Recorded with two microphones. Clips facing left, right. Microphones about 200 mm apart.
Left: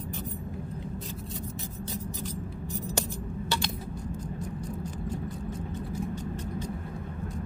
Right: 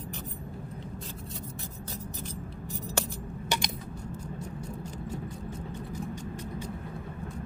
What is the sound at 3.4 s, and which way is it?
Coin, 15° right (ahead or behind).